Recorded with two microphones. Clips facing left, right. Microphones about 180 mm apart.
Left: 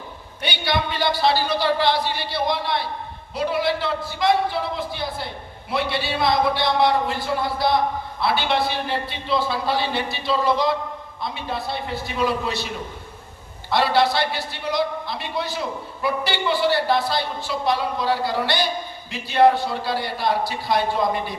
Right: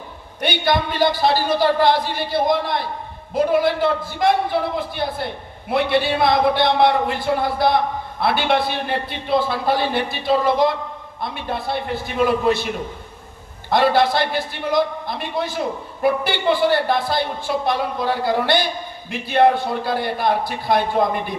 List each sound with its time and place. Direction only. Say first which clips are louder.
0.4 s a man's voice: right 4 dB; 50° right (ahead or behind)